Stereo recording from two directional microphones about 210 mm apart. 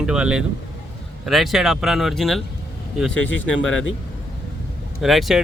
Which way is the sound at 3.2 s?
65° left (ahead or behind).